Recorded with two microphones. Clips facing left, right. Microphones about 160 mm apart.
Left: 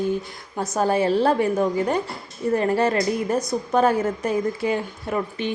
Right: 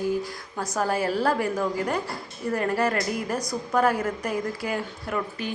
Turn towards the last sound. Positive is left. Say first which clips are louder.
# left 4 dB
turn(degrees=25)  # may be behind; listen again after turning